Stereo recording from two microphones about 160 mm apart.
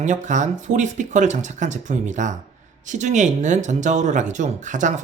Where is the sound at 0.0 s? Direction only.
50° right (ahead or behind).